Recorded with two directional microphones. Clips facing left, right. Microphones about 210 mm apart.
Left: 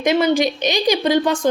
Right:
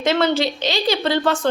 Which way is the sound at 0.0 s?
15° left (ahead or behind).